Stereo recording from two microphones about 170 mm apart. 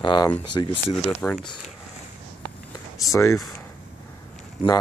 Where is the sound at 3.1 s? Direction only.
15° left (ahead or behind).